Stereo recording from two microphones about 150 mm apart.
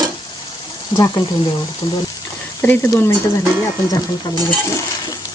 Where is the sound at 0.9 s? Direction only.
35° left (ahead or behind).